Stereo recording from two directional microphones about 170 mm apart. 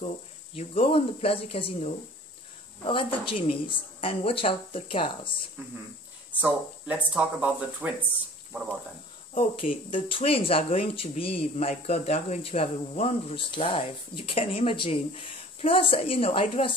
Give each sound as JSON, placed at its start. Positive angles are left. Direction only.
{"t": 0.6, "sound": "speech", "side_deg": 35}
{"t": 7.2, "sound": "speech", "side_deg": -5}
{"t": 9.3, "sound": "speech", "side_deg": 30}